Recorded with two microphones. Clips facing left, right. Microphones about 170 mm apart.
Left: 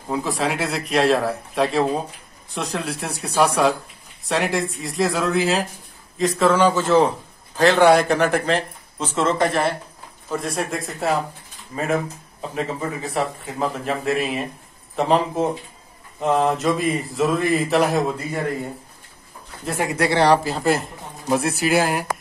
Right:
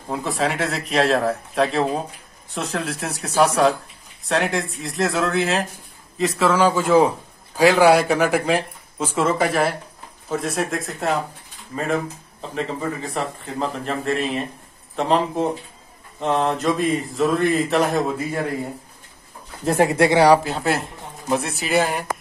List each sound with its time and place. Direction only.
0.1 s a man's voice: centre (ahead or behind)
19.6 s speech: 35° right (ahead or behind)
20.2 s speech: 5° right (ahead or behind)